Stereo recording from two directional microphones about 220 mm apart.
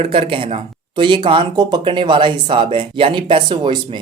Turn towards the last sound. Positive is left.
turn(degrees=-20)  # may be behind; listen again after turning